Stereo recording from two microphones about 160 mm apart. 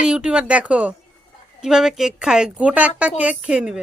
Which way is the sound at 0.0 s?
5° right (ahead or behind).